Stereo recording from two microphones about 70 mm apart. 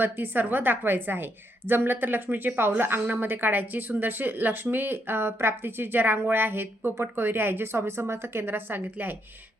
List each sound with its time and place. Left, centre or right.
0.0 s a woman's voice: right